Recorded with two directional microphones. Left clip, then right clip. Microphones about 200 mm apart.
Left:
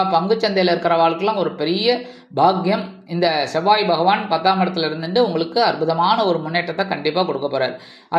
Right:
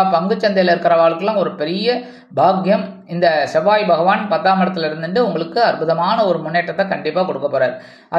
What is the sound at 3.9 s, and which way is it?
Speech, 20° left (ahead or behind).